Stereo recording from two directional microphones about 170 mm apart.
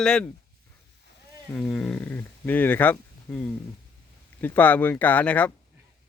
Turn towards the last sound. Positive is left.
turn(degrees=10)  # may be behind; listen again after turning